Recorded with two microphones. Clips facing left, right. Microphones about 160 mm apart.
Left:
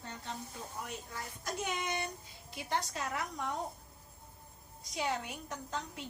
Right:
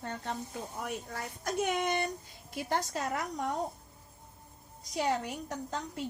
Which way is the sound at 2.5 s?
45° right (ahead or behind).